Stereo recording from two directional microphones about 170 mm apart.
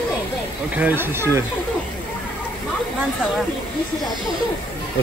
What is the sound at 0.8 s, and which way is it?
Speech, 10° right (ahead or behind).